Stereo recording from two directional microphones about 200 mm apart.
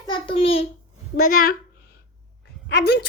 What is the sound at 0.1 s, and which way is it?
Speech, 25° left (ahead or behind).